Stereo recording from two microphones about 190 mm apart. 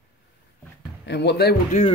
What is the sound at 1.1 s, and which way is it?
Speech, 60° left (ahead or behind).